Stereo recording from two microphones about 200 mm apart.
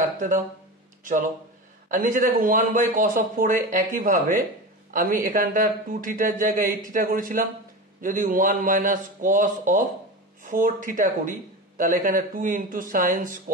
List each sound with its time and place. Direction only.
1.9 s a man's voice: 40° right (ahead or behind)